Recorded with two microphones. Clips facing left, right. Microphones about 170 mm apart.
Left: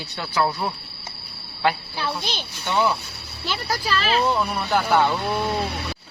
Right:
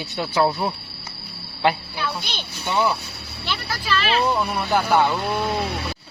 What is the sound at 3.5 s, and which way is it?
Speech, 35° left (ahead or behind).